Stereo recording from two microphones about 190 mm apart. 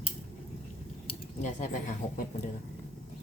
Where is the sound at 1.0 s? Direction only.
40° left (ahead or behind).